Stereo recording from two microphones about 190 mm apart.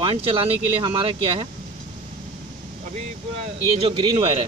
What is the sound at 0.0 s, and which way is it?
Speech, 30° right (ahead or behind).